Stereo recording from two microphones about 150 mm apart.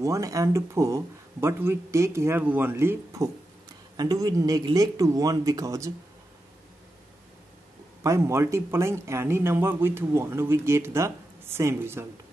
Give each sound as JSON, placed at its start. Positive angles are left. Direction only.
{"t": 0.0, "sound": "speech", "side_deg": -20}
{"t": 8.0, "sound": "a man's voice", "side_deg": -20}